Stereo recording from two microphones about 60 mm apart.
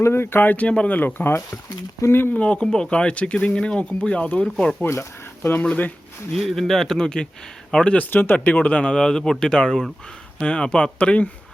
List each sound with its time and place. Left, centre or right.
0.0 s speech: left
0.7 s speech: centre
0.9 s speech: left
2.3 s speech: left
4.8 s speech: left
6.3 s speech: centre
7.9 s speech: left